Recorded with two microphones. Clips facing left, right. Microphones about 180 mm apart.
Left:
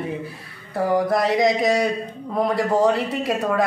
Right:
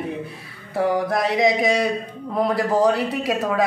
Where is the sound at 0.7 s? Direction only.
Centre (ahead or behind).